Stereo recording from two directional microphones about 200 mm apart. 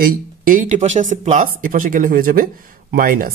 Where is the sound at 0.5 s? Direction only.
40° right (ahead or behind).